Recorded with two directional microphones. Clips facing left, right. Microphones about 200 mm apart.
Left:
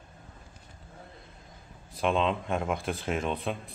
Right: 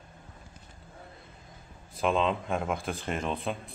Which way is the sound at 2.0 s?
Centre (ahead or behind).